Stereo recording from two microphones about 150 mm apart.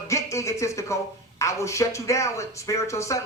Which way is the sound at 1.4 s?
20° left (ahead or behind).